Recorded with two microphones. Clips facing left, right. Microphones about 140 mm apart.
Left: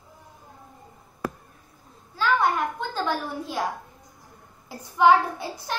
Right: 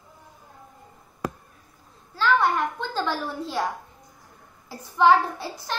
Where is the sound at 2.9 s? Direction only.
15° left (ahead or behind).